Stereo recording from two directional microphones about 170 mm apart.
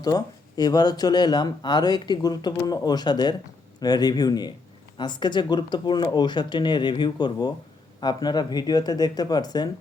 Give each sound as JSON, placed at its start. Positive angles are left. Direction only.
{"t": 0.0, "sound": "speech", "side_deg": 25}